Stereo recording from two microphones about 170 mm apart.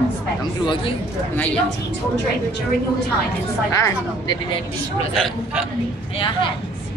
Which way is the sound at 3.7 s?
20° left (ahead or behind).